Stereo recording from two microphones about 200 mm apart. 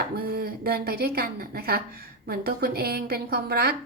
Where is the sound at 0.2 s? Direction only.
50° right (ahead or behind).